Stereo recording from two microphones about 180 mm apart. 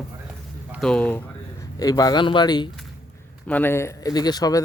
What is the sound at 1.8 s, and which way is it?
Speech, 20° left (ahead or behind).